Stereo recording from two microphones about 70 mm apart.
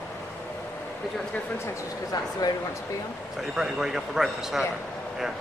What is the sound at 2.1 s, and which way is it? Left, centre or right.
Speech, left.